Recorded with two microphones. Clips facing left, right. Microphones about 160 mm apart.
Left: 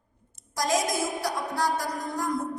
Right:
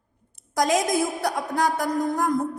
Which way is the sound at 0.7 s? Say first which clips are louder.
Right 4 dB; 60° right (ahead or behind).